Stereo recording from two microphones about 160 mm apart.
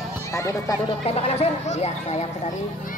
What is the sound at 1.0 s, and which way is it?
Speech, 40° left (ahead or behind).